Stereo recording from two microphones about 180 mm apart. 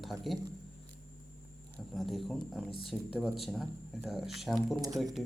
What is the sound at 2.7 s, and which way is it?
Speech, 30° left (ahead or behind).